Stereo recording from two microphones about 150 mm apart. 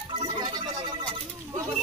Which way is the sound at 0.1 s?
35° right (ahead or behind).